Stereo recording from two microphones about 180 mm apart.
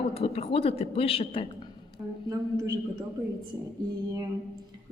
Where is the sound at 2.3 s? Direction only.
20° right (ahead or behind).